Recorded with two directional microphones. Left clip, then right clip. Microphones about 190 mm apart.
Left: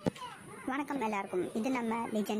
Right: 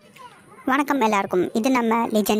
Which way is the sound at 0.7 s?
40° right (ahead or behind).